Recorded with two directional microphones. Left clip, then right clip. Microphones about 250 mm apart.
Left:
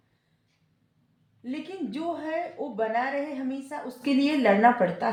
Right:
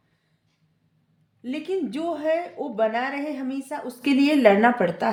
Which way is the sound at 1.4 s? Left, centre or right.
Right.